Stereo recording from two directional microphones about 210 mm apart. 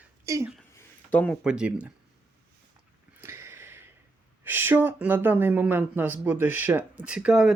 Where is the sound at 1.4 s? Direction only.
5° right (ahead or behind).